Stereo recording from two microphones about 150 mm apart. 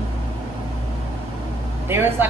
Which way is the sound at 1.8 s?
15° right (ahead or behind).